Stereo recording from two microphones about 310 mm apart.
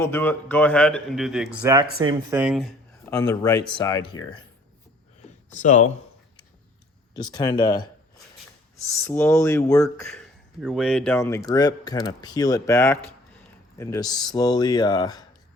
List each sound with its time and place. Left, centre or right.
0.0 s speech: centre
3.1 s speech: centre
5.5 s speech: left
7.1 s speech: centre
9.0 s speech: centre